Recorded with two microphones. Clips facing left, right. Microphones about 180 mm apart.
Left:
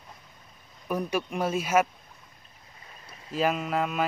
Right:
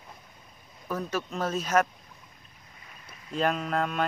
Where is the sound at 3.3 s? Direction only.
5° left (ahead or behind).